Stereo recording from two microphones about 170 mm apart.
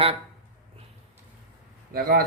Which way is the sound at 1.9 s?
60° right (ahead or behind).